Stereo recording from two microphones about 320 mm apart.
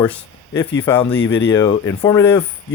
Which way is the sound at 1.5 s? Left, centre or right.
Centre.